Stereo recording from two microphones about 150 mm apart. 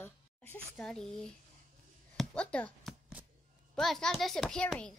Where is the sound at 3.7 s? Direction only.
Centre (ahead or behind).